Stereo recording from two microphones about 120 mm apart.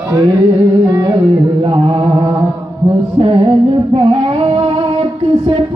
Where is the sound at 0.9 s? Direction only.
35° right (ahead or behind).